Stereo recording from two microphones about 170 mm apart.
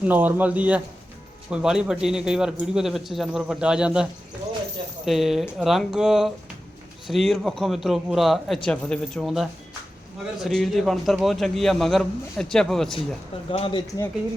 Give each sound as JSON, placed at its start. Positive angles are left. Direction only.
{"t": 0.0, "sound": "a man's voice", "side_deg": -10}
{"t": 5.0, "sound": "a man's voice", "side_deg": 0}
{"t": 13.5, "sound": "speech", "side_deg": 30}